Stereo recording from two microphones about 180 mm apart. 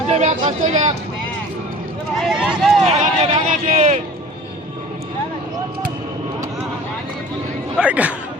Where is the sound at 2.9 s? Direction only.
40° right (ahead or behind).